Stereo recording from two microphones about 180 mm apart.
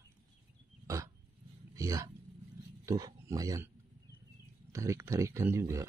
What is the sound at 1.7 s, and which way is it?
Speech, 20° right (ahead or behind).